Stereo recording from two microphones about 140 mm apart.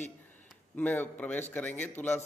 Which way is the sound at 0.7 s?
10° left (ahead or behind).